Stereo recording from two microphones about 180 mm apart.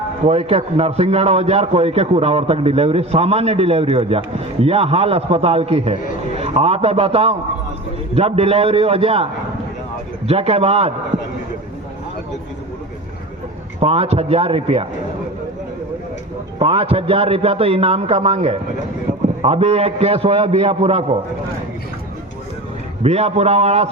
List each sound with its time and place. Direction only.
0.3 s a man's voice: 35° right (ahead or behind)
13.7 s a man's voice: 35° right (ahead or behind)
16.6 s a man's voice: 30° right (ahead or behind)
23.0 s a man's voice: 35° right (ahead or behind)